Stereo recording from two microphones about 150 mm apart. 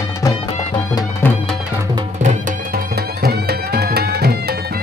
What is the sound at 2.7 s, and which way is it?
Music, 90° right.